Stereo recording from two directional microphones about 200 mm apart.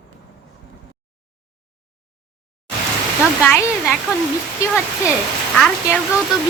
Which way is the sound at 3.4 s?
Centre (ahead or behind).